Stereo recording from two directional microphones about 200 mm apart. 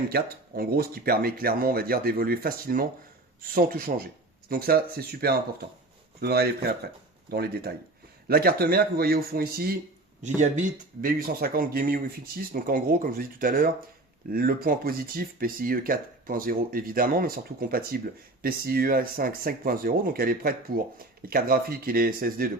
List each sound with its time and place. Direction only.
0.1 s speech: 50° right (ahead or behind)
10.2 s speech: 35° right (ahead or behind)